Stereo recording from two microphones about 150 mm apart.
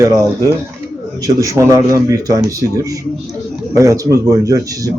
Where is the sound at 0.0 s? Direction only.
25° right (ahead or behind).